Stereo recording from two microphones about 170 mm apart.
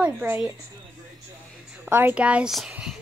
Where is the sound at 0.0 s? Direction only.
10° right (ahead or behind).